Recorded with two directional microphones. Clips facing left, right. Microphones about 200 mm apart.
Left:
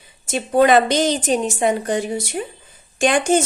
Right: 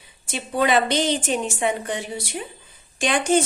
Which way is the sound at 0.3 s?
45° left (ahead or behind).